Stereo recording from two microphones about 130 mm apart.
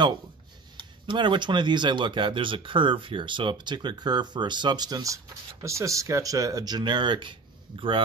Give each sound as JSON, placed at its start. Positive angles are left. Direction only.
{"t": 0.7, "sound": "speech", "side_deg": -35}